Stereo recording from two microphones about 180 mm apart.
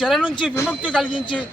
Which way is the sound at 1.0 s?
25° left (ahead or behind).